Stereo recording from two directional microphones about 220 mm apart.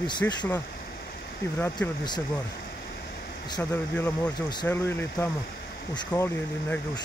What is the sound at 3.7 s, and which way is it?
Speech, 10° left (ahead or behind).